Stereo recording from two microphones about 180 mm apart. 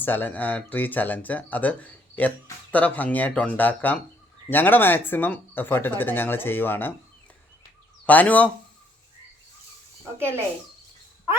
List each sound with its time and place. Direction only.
0.0 s speech: 10° left (ahead or behind)
8.0 s a man's voice: 10° left (ahead or behind)
10.2 s speech: 15° right (ahead or behind)